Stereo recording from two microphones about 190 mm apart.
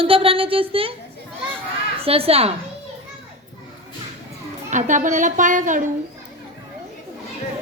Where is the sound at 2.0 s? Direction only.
30° right (ahead or behind).